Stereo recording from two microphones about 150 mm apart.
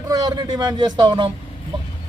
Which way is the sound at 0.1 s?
25° right (ahead or behind).